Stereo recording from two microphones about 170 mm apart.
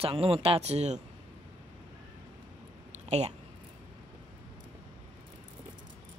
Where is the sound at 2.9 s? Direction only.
40° right (ahead or behind).